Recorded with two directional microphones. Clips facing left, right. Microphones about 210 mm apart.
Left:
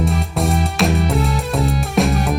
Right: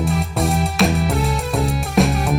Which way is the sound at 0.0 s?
Centre (ahead or behind).